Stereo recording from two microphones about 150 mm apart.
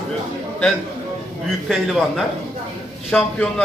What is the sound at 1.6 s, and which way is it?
A man's voice, centre (ahead or behind).